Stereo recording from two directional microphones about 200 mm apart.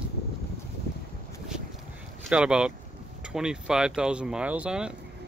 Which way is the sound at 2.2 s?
5° right (ahead or behind).